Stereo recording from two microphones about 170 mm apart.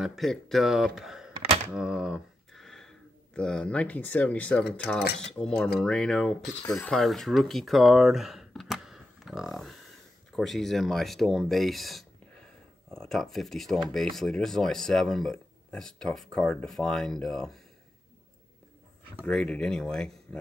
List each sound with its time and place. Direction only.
0.0 s speech: centre (ahead or behind)
1.3 s typewriter: 35° right (ahead or behind)
1.7 s speech: 5° right (ahead or behind)
19.2 s speech: 5° left (ahead or behind)